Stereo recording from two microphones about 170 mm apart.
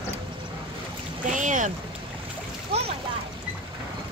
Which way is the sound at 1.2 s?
50° right (ahead or behind).